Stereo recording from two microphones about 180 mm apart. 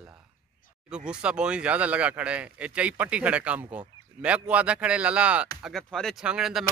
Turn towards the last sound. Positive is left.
turn(degrees=-5)  # may be behind; listen again after turning